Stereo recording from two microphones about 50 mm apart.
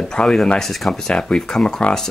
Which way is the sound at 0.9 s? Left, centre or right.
Centre.